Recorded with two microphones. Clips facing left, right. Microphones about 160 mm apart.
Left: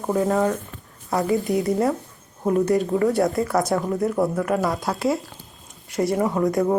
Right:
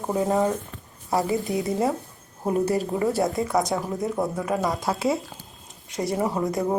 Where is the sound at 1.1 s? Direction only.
Centre (ahead or behind).